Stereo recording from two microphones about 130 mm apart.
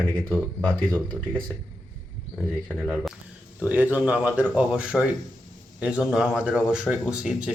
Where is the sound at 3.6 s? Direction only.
10° right (ahead or behind).